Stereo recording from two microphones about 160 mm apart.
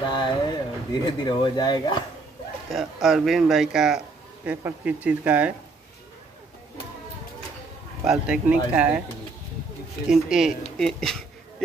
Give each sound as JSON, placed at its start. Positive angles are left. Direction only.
{"t": 0.1, "sound": "speech", "side_deg": 30}
{"t": 2.7, "sound": "speech", "side_deg": 0}
{"t": 8.0, "sound": "speech", "side_deg": -5}
{"t": 10.1, "sound": "speech", "side_deg": -5}